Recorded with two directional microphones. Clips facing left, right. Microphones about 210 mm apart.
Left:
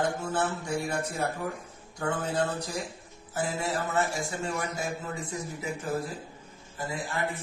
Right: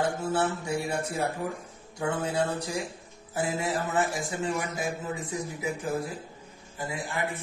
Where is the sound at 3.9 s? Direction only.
20° right (ahead or behind).